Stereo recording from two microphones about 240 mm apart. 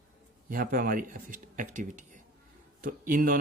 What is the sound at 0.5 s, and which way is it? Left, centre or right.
Speech, right.